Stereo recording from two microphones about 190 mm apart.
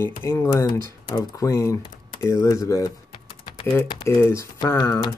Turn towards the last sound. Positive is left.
turn(degrees=10)  # may be behind; listen again after turning